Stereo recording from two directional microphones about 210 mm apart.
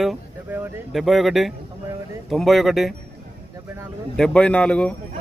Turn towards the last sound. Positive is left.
turn(degrees=5)  # may be behind; listen again after turning